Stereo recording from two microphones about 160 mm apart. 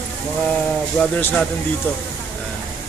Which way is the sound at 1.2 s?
10° left (ahead or behind).